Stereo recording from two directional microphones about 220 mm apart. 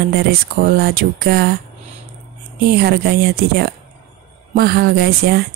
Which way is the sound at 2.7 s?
45° right (ahead or behind).